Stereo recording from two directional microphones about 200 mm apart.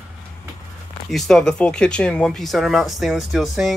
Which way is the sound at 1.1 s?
Centre (ahead or behind).